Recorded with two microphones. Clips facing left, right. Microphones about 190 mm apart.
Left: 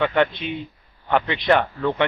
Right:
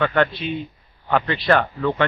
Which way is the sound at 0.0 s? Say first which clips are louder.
Even; 15° left (ahead or behind).